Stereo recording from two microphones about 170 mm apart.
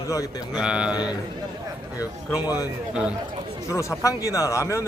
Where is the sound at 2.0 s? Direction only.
20° left (ahead or behind).